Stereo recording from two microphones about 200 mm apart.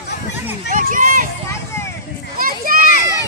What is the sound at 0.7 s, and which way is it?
Speech, 40° right (ahead or behind).